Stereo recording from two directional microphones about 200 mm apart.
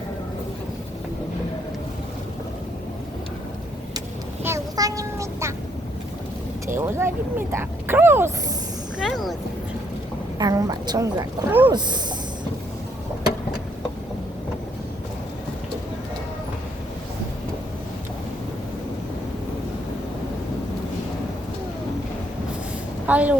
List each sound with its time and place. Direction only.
4.4 s vehicle: 15° right (ahead or behind)
6.7 s speech: 10° right (ahead or behind)
9.0 s vehicle: centre (ahead or behind)
10.3 s a woman's voice: 20° right (ahead or behind)
23.0 s a woman's voice: 10° right (ahead or behind)